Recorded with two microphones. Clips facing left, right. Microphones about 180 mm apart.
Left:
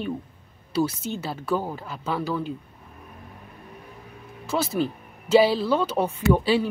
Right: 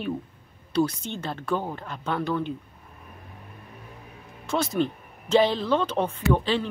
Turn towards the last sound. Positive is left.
turn(degrees=10)  # may be behind; listen again after turning